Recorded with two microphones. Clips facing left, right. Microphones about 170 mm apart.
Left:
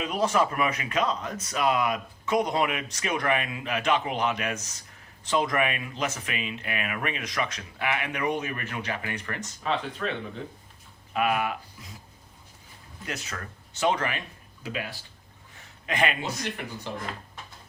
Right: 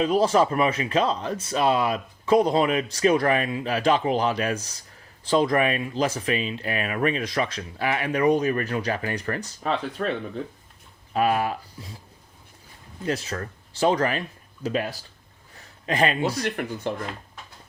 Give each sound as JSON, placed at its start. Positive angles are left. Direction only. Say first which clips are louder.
{"t": 0.0, "sound": "speech", "louder": "right 5 dB", "side_deg": -30}
{"t": 13.1, "sound": "speech", "louder": "right 9 dB", "side_deg": -30}
{"t": 16.4, "sound": "speech", "louder": "right 7 dB", "side_deg": -55}